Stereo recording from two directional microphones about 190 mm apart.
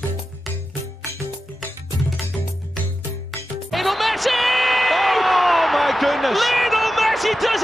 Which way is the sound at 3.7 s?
Centre (ahead or behind).